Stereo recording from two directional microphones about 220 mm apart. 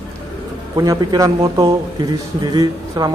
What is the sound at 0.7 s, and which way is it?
A man's voice, 15° right (ahead or behind).